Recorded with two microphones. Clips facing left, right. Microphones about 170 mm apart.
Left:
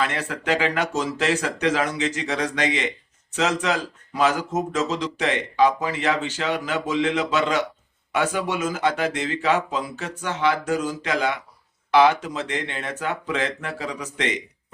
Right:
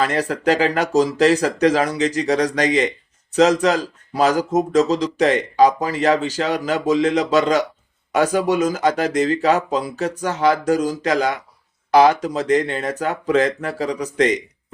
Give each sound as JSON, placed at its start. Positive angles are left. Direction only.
{"t": 0.0, "sound": "speech", "side_deg": -40}